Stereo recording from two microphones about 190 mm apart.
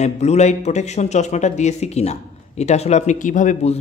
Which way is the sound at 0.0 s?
35° left (ahead or behind).